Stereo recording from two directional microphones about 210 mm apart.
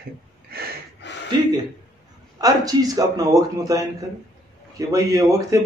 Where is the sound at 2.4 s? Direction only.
15° right (ahead or behind).